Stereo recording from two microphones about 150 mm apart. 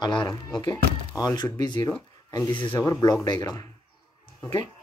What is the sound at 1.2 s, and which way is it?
Speech, 25° left (ahead or behind).